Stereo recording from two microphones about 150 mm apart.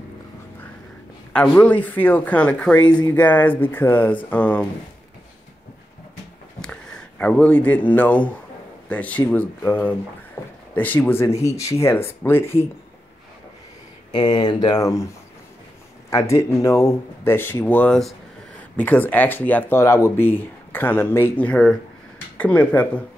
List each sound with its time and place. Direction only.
1.3 s speech: 10° left (ahead or behind)
2.8 s speech: 30° left (ahead or behind)
3.1 s speech: 10° left (ahead or behind)
6.6 s speech: 5° left (ahead or behind)
10.4 s a sound: 15° left (ahead or behind)
10.7 s speech: 10° left (ahead or behind)
14.1 s speech: 30° left (ahead or behind)
16.1 s speech: 20° left (ahead or behind)